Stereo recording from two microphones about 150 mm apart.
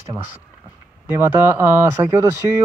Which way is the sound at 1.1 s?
15° right (ahead or behind).